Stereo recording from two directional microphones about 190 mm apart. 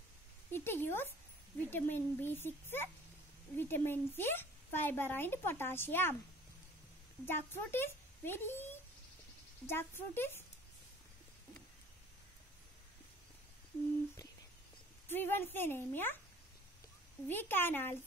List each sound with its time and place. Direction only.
0.5 s a woman's voice: 10° left (ahead or behind)
7.2 s a woman's voice: 10° left (ahead or behind)
15.0 s a woman's voice: 10° left (ahead or behind)
17.3 s a woman's voice: 10° left (ahead or behind)